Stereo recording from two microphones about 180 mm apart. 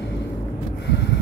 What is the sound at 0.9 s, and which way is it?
Gasp, 70° left (ahead or behind).